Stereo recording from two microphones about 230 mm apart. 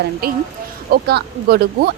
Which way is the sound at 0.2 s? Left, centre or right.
Right.